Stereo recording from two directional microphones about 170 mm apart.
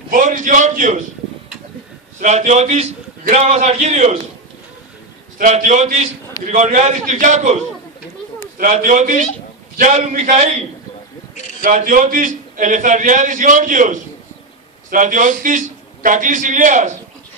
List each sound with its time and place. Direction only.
0.1 s a man's voice: 50° right (ahead or behind)
2.1 s a man's voice: 45° right (ahead or behind)
5.4 s a man's voice: 45° right (ahead or behind)
8.5 s a man's voice: 50° right (ahead or behind)
11.6 s a man's voice: 55° right (ahead or behind)